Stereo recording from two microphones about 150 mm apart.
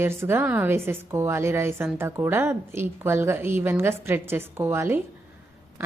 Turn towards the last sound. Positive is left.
turn(degrees=-15)  # may be behind; listen again after turning